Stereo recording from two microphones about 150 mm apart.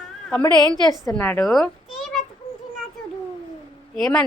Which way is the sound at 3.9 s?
Centre (ahead or behind).